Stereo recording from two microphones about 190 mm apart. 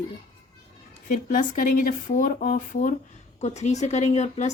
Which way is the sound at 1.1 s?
45° left (ahead or behind).